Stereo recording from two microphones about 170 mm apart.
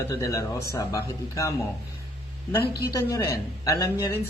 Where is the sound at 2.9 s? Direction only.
20° left (ahead or behind).